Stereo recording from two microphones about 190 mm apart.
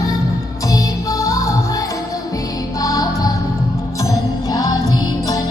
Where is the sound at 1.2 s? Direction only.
15° left (ahead or behind).